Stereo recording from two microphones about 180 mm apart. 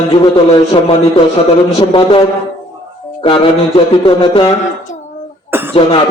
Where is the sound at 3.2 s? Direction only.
30° left (ahead or behind).